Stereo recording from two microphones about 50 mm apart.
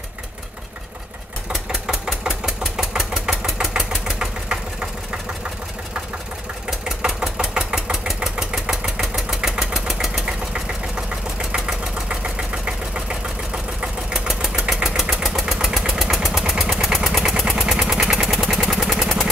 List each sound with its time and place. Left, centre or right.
1.5 s engine: centre
3.3 s engine: centre
7.0 s engine: centre
10.2 s engine: centre
14.1 s engine: centre
18.1 s vehicle: centre